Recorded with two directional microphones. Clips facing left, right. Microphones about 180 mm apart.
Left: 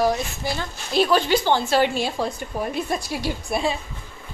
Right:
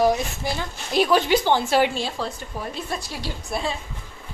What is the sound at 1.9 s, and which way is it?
A woman's voice, 15° left (ahead or behind).